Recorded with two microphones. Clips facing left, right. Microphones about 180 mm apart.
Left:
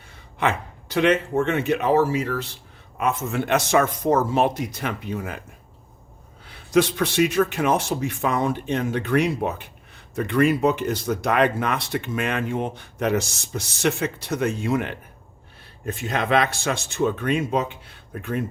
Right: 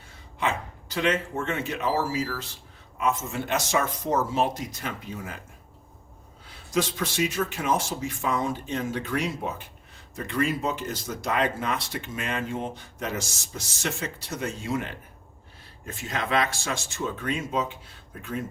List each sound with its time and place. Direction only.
0.3 s a man's voice: 65° left (ahead or behind)
6.5 s a man's voice: 65° left (ahead or behind)